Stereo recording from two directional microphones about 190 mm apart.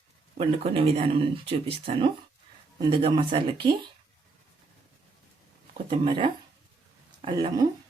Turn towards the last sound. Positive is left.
turn(degrees=-25)  # may be behind; listen again after turning